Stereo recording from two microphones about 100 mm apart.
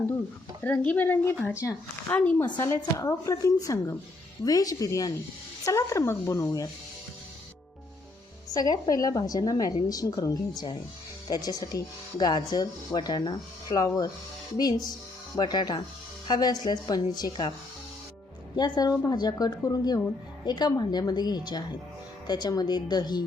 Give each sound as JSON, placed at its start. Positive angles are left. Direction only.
{"t": 0.6, "sound": "speech", "side_deg": 15}
{"t": 2.6, "sound": "a woman's voice", "side_deg": 30}
{"t": 8.5, "sound": "a woman's voice", "side_deg": 40}
{"t": 15.4, "sound": "speech", "side_deg": 45}
{"t": 18.5, "sound": "a woman's voice", "side_deg": 45}